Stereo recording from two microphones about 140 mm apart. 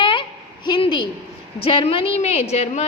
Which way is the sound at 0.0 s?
35° left (ahead or behind).